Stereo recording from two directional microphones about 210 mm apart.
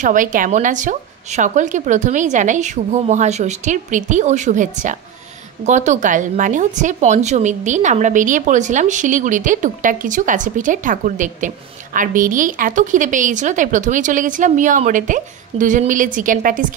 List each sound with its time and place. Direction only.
0.0 s a woman's voice: 40° right (ahead or behind)